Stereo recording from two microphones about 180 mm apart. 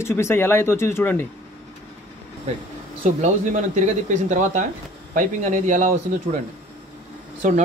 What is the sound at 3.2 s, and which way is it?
Speech, 40° right (ahead or behind).